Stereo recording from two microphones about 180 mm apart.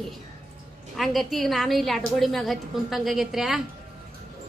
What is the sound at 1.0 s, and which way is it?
A woman's voice, centre (ahead or behind).